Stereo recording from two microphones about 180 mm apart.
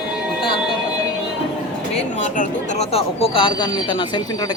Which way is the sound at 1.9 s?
40° left (ahead or behind).